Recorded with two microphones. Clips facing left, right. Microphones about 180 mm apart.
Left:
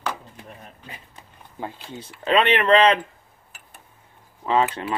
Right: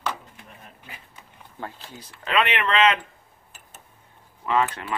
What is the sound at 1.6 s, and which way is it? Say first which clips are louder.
Speech: left 4 dB; 25° left (ahead or behind).